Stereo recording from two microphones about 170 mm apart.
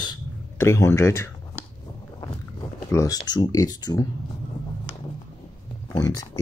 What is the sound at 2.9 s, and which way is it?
Speech, 20° left (ahead or behind).